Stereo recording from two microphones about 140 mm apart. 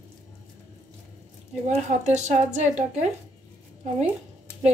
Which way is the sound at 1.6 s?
55° right (ahead or behind).